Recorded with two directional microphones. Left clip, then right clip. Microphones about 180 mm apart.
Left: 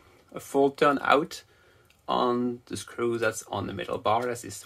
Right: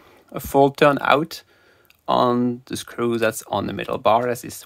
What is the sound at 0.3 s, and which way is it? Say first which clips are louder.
Speech: right 8 dB; 50° right (ahead or behind).